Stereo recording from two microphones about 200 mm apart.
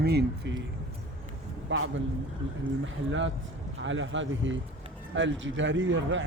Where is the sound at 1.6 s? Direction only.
90° right.